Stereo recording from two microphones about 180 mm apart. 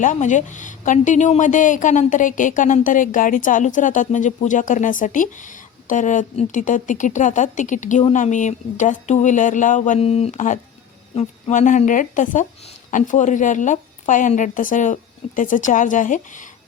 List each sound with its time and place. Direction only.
0.0 s a woman's voice: 45° left (ahead or behind)